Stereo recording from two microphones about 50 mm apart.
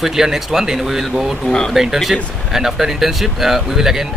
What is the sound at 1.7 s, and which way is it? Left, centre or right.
Speech, centre.